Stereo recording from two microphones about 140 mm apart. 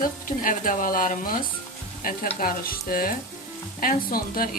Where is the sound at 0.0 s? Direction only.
75° left (ahead or behind).